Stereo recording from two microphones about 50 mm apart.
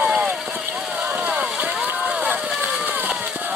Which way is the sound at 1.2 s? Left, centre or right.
Right.